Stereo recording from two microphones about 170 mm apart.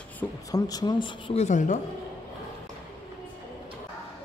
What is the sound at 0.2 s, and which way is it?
Speech, 20° left (ahead or behind).